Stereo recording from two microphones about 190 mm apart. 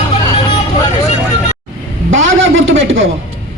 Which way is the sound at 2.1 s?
90° right.